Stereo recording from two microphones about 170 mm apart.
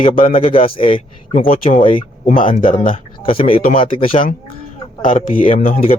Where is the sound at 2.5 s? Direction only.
50° left (ahead or behind).